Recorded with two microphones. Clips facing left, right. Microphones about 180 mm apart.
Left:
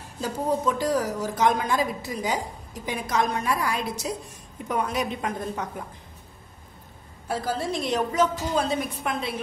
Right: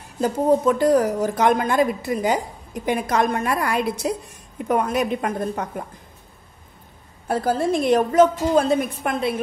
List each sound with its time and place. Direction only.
0.2 s a woman's voice: 55° right (ahead or behind)
7.2 s a woman's voice: 55° right (ahead or behind)